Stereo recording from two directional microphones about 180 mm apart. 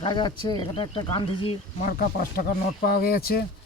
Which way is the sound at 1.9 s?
55° left (ahead or behind).